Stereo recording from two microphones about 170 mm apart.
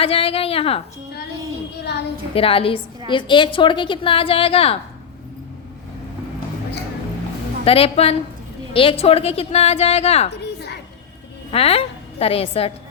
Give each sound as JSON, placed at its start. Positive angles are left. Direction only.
{"t": 0.0, "sound": "a woman's voice", "side_deg": 35}
{"t": 1.8, "sound": "a woman's voice", "side_deg": 80}
{"t": 2.3, "sound": "a woman's voice", "side_deg": 35}
{"t": 7.6, "sound": "a woman's voice", "side_deg": 35}
{"t": 10.4, "sound": "a sound", "side_deg": 75}
{"t": 11.5, "sound": "a woman's voice", "side_deg": 35}